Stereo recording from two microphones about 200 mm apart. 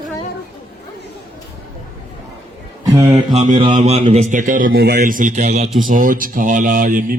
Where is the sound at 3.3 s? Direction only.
35° right (ahead or behind).